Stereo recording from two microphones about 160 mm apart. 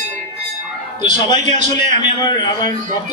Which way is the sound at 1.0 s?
50° right (ahead or behind).